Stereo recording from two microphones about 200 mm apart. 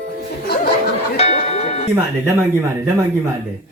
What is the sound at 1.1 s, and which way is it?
Music, 30° left (ahead or behind).